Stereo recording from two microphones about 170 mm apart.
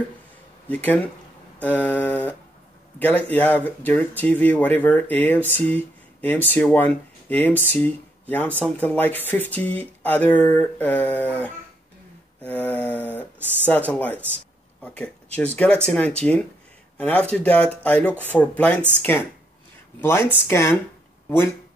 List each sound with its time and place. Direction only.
0.7 s speech: 10° left (ahead or behind)
15.3 s speech: 10° left (ahead or behind)
20.0 s speech: 15° left (ahead or behind)